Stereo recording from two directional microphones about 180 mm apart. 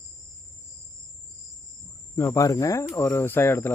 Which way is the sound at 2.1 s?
15° left (ahead or behind).